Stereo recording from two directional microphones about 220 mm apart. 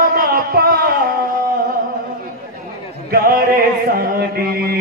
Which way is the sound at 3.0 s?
45° right (ahead or behind).